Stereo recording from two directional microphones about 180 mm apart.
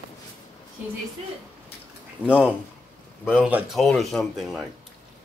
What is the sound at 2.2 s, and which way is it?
Speech, 10° right (ahead or behind).